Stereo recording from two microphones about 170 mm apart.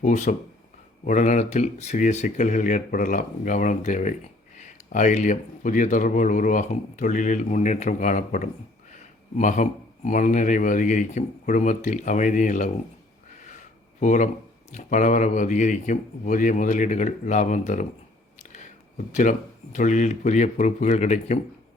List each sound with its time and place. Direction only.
0.0 s speech: 45° left (ahead or behind)
13.4 s a sound: 50° left (ahead or behind)
14.7 s speech: 45° left (ahead or behind)
19.1 s speech: 45° left (ahead or behind)